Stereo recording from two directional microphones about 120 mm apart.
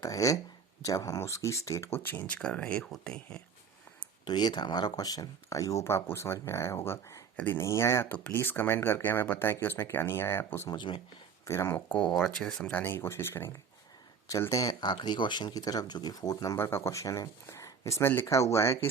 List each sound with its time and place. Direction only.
0.0 s speech: 30° left (ahead or behind); by 3.3 s 10° left (ahead or behind)
4.3 s speech: 35° left (ahead or behind); by 10.7 s 20° left (ahead or behind)
10.7 s speech: 40° left (ahead or behind)
11.4 s speech: 20° left (ahead or behind)
11.9 s speech: 10° left (ahead or behind)